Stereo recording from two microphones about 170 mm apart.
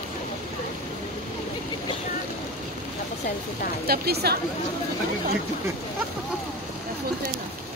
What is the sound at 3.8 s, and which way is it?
Speech, 70° right (ahead or behind).